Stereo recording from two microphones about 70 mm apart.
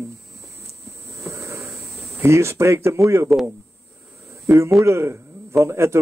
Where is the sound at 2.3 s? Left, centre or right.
Right.